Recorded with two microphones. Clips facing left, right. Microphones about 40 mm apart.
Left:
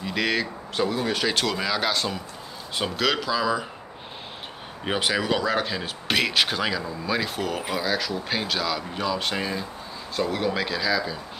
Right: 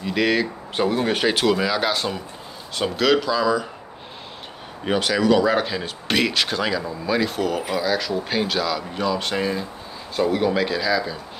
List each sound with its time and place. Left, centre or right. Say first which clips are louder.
0.0 s speech: right 5 dB; centre
0.7 s speech: right 4 dB; right
1.3 s speech: right 5 dB; centre
4.8 s speech: right 5 dB; centre
5.4 s speech: right 5 dB; centre